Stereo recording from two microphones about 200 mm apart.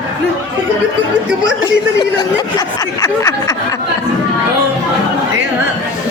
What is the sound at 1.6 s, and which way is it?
Speech, 20° left (ahead or behind).